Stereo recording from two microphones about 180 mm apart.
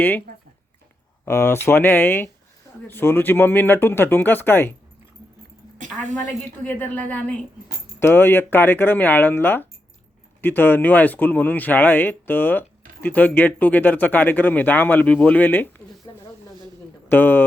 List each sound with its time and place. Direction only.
1.2 s speech: 15° left (ahead or behind)
6.7 s speech: 10° left (ahead or behind)
16.1 s snake: 20° left (ahead or behind)
17.1 s speech: 10° left (ahead or behind)